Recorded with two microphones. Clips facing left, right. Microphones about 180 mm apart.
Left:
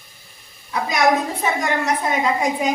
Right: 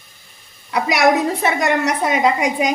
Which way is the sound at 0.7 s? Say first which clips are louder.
Right 3 dB; 75° right (ahead or behind).